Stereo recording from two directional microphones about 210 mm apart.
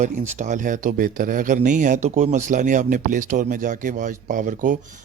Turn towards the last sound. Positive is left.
turn(degrees=-35)  # may be behind; listen again after turning